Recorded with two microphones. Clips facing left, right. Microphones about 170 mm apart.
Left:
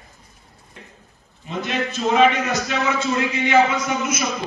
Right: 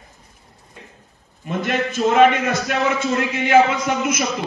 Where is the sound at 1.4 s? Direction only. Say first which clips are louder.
Right 3 dB; 50° right (ahead or behind).